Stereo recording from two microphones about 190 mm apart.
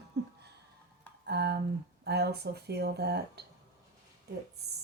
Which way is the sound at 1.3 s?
60° right (ahead or behind).